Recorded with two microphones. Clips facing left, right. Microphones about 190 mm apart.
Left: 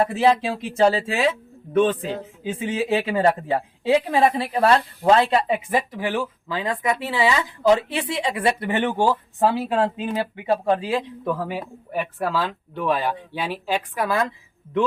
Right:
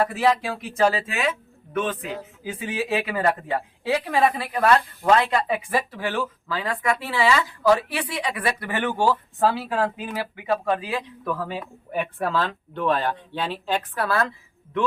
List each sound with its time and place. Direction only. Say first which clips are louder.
0.0 s speech: left 3 dB; 25° left (ahead or behind)
11.9 s speech: even; centre (ahead or behind)